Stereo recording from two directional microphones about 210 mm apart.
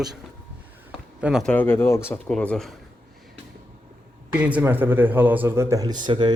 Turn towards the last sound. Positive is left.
turn(degrees=-20)  # may be behind; listen again after turning